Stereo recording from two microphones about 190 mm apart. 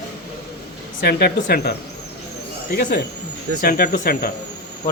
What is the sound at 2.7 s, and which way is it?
Speech, 65° left (ahead or behind).